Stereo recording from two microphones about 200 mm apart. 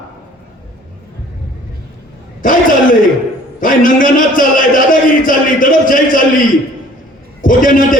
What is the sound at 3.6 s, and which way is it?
A man's voice, 45° left (ahead or behind).